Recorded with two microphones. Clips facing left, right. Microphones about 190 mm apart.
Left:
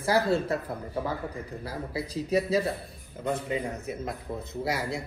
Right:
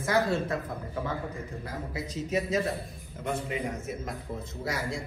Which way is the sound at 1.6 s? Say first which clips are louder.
Left 4 dB; 35° left (ahead or behind).